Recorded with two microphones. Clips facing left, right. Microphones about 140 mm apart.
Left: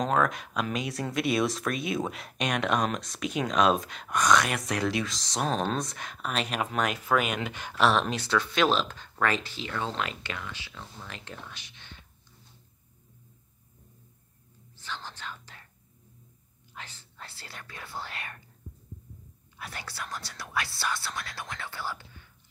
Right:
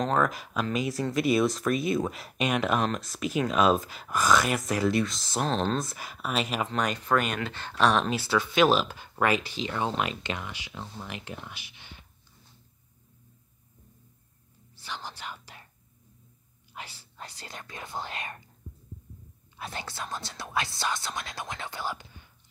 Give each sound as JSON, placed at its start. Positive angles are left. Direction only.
{"t": 0.2, "sound": "speech", "side_deg": 0}
{"t": 14.8, "sound": "whispering", "side_deg": -10}
{"t": 16.7, "sound": "whispering", "side_deg": -10}
{"t": 19.5, "sound": "speech", "side_deg": -25}